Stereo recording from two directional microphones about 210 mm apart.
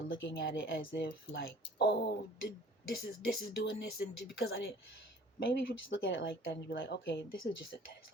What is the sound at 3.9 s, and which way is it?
Speech, 50° left (ahead or behind).